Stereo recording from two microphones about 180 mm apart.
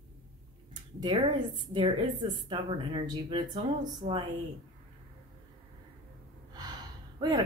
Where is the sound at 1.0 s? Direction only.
25° right (ahead or behind).